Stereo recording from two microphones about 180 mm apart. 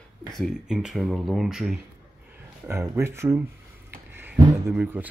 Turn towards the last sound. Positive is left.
turn(degrees=-10)  # may be behind; listen again after turning